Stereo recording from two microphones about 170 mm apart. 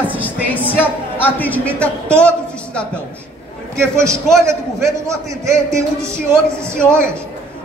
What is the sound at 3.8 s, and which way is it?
Speech, 15° right (ahead or behind).